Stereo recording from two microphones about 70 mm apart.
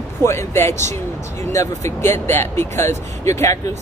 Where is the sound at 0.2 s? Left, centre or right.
Left.